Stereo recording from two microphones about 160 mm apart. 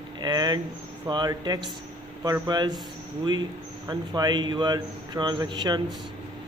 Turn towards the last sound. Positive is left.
turn(degrees=-25)  # may be behind; listen again after turning